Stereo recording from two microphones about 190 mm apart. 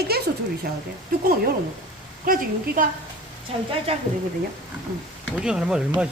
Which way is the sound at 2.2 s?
50° right (ahead or behind).